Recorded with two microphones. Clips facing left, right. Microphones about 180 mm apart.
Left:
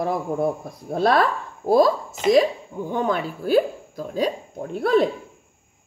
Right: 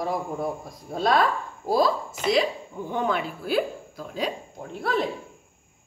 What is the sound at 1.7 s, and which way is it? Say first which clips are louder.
Speech: left 5 dB; 45° left (ahead or behind).